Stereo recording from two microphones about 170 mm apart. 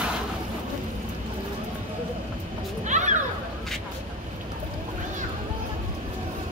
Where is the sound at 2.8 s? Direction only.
45° right (ahead or behind).